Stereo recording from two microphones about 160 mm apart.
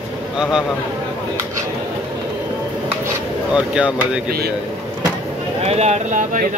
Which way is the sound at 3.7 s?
5° right (ahead or behind).